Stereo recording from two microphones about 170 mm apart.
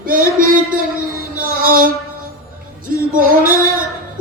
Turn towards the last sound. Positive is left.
turn(degrees=-55)  # may be behind; listen again after turning